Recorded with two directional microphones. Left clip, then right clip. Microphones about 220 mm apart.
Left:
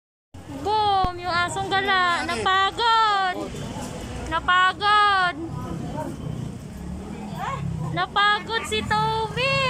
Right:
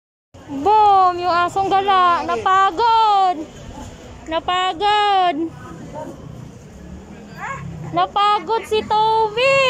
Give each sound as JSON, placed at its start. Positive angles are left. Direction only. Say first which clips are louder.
{"t": 0.7, "sound": "a sound", "louder": "right 9 dB", "side_deg": -10}
{"t": 4.3, "sound": "speech", "louder": "even", "side_deg": -15}
{"t": 7.9, "sound": "speech", "louder": "right 5 dB", "side_deg": -10}